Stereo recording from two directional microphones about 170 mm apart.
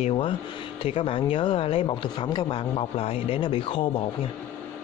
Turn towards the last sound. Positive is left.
turn(degrees=30)  # may be behind; listen again after turning